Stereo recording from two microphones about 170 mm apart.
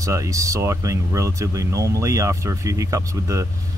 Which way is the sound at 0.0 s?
20° right (ahead or behind).